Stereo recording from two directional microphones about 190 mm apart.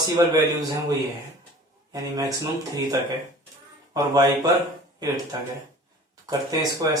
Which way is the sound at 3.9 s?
20° right (ahead or behind).